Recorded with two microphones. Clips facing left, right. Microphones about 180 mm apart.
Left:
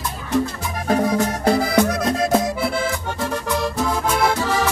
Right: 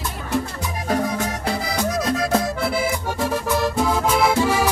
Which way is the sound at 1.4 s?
55° left (ahead or behind).